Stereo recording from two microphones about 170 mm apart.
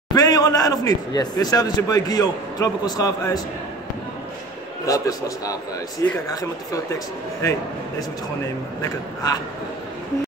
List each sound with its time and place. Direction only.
0.1 s a man's voice: 20° left (ahead or behind)
4.8 s a man's voice: 20° left (ahead or behind)
8.8 s a man's voice: 20° left (ahead or behind)